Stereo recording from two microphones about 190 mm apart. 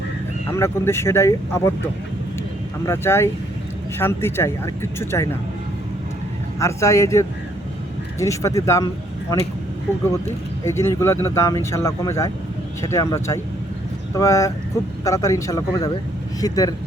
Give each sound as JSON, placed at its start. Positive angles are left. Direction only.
{"t": 0.5, "sound": "speech", "side_deg": 15}
{"t": 2.8, "sound": "speech", "side_deg": 15}
{"t": 6.6, "sound": "speech", "side_deg": 15}
{"t": 10.7, "sound": "speech", "side_deg": 15}